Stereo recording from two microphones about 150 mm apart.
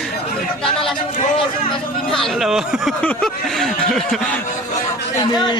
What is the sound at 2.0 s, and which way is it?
Speech, 5° left (ahead or behind).